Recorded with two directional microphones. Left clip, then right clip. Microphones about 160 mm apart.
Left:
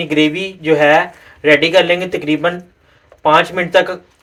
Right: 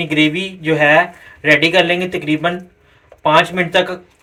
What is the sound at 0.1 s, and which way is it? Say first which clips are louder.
Speech: left 1 dB; 40° left (ahead or behind).